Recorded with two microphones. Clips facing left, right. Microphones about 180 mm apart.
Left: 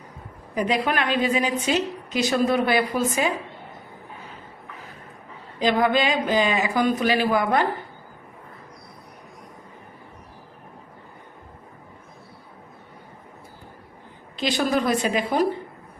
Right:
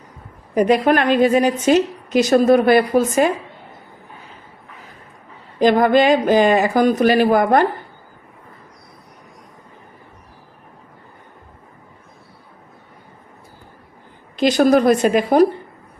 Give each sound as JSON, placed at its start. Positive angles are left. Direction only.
{"t": 0.5, "sound": "a woman's voice", "side_deg": -45}
{"t": 5.5, "sound": "a woman's voice", "side_deg": -50}
{"t": 14.3, "sound": "a woman's voice", "side_deg": -45}